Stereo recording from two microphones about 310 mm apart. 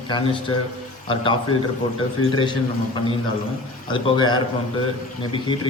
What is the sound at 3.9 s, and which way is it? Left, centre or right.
Speech, centre.